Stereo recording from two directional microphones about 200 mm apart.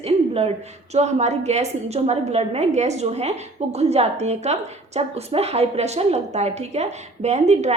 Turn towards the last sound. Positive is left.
turn(degrees=-35)  # may be behind; listen again after turning